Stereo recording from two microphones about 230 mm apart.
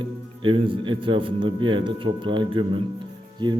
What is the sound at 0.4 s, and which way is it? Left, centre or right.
A man's voice, right.